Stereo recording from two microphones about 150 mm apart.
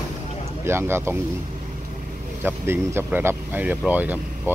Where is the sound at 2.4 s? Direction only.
15° right (ahead or behind).